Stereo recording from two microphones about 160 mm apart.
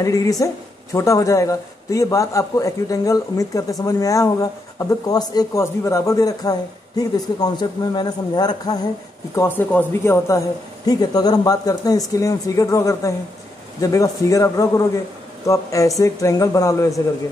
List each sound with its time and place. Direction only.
0.0 s a man's voice: 20° left (ahead or behind)
9.3 s a man's voice: 15° left (ahead or behind)